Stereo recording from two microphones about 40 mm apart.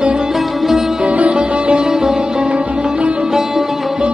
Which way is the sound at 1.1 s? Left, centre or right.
Right.